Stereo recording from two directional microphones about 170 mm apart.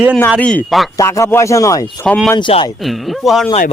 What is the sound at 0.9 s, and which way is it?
Speech, 15° left (ahead or behind).